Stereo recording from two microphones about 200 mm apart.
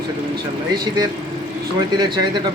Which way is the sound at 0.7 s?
20° right (ahead or behind).